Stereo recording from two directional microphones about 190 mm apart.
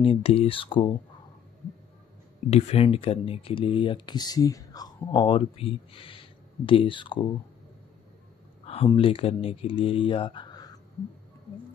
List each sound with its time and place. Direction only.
0.0 s speech: 30° left (ahead or behind)
2.5 s speech: 30° left (ahead or behind)
8.6 s speech: 30° left (ahead or behind)